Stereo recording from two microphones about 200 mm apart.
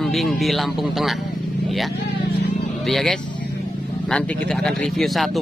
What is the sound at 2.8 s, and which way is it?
Speech, centre (ahead or behind).